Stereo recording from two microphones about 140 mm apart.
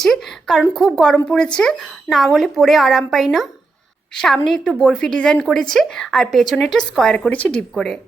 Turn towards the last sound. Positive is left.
turn(degrees=5)  # may be behind; listen again after turning